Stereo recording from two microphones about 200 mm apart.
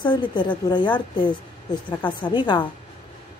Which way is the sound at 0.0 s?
25° left (ahead or behind).